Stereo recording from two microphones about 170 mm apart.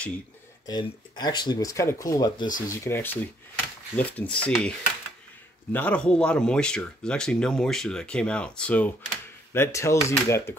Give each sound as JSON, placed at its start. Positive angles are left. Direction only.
{"t": 0.7, "sound": "speech", "side_deg": 25}